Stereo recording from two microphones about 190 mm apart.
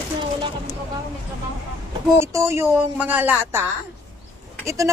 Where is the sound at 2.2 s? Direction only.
15° right (ahead or behind).